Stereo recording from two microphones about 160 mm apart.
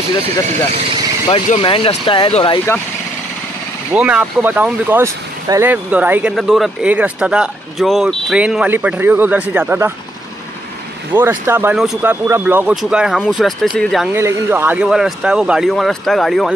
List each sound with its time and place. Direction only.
1.6 s speech: 35° left (ahead or behind)
3.9 s speech: 10° right (ahead or behind)
11.1 s speech: 15° right (ahead or behind)
11.7 s speech: 5° right (ahead or behind)
14.1 s speech: 15° right (ahead or behind)